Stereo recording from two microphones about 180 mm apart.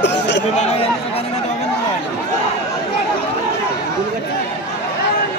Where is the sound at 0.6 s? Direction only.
35° left (ahead or behind).